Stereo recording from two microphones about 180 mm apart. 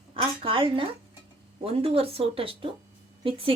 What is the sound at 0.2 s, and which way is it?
A woman's voice, 30° right (ahead or behind).